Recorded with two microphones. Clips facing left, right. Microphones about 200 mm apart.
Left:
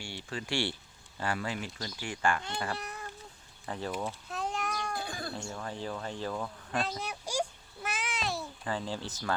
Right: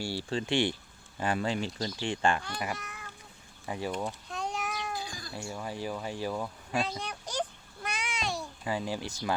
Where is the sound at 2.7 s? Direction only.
35° left (ahead or behind).